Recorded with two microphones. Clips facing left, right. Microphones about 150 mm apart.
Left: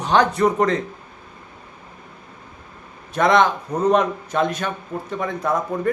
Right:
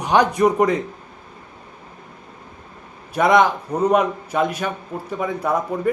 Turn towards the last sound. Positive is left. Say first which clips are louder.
# right 1 dB
turn(degrees=-10)  # may be behind; listen again after turning